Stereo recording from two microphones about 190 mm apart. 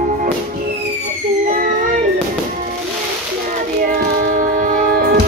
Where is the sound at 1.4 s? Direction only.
45° right (ahead or behind).